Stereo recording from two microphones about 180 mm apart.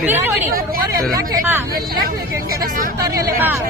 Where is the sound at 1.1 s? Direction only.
15° right (ahead or behind).